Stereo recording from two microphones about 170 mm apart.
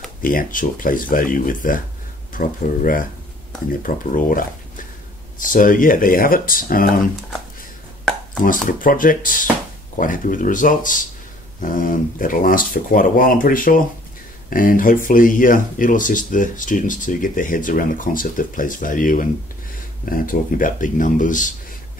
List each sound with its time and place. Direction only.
0.2 s speech: 55° left (ahead or behind)
8.5 s speech: 50° left (ahead or behind)